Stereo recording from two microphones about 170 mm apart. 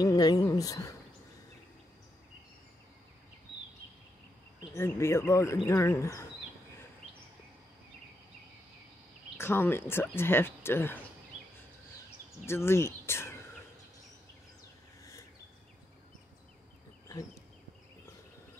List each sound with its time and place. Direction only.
0.0 s speech: 20° left (ahead or behind)
4.7 s speech: 15° left (ahead or behind)
9.4 s speech: 15° left (ahead or behind)
12.4 s speech: 15° left (ahead or behind)
17.1 s speech: 20° left (ahead or behind)